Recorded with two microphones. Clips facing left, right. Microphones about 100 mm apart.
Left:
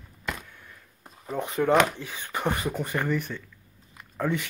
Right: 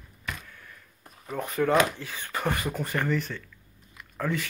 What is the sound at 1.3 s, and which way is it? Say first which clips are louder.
Speech: left 2 dB; 20° left (ahead or behind).